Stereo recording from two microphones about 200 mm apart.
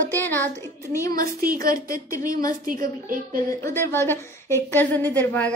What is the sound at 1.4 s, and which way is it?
A woman's voice, 45° right (ahead or behind).